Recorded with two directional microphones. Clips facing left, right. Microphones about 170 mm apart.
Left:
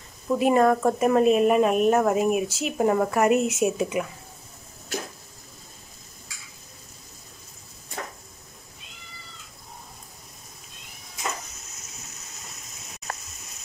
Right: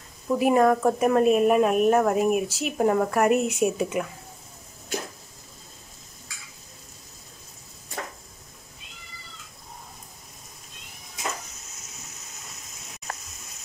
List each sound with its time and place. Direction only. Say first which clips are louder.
0.3 s a woman's voice: even; centre (ahead or behind)